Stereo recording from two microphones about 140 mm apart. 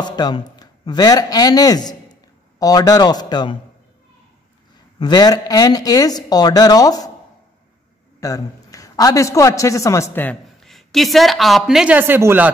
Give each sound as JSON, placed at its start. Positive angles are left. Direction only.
{"t": 0.0, "sound": "speech", "side_deg": 30}
{"t": 4.9, "sound": "speech", "side_deg": 30}
{"t": 8.2, "sound": "a man's voice", "side_deg": 25}
{"t": 10.6, "sound": "speech", "side_deg": 0}